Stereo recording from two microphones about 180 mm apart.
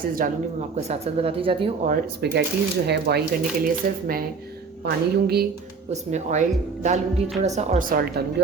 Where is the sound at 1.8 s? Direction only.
55° right (ahead or behind).